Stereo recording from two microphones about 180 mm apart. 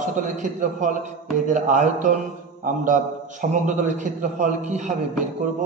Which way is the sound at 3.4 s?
50° right (ahead or behind).